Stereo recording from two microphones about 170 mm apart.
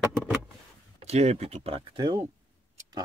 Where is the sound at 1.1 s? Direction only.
40° right (ahead or behind).